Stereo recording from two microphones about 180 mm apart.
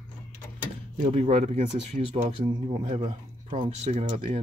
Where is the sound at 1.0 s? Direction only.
35° right (ahead or behind).